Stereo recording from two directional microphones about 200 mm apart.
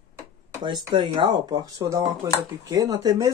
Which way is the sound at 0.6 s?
20° right (ahead or behind).